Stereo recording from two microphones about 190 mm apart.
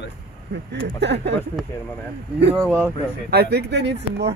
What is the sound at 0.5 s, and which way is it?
Speech, 65° right (ahead or behind).